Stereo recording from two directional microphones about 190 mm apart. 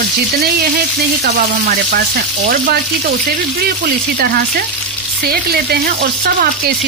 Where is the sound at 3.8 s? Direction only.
50° right (ahead or behind).